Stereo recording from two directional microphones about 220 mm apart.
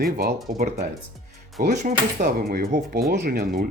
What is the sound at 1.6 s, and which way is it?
Speech, 30° right (ahead or behind).